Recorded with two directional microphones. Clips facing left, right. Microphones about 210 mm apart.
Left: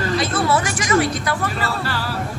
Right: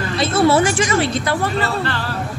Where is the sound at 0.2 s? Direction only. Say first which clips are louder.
Right 10 dB; 25° right (ahead or behind).